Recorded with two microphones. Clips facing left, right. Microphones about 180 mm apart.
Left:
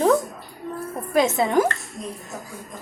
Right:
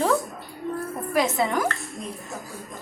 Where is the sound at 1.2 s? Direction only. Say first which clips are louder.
Left 5 dB; 25° left (ahead or behind).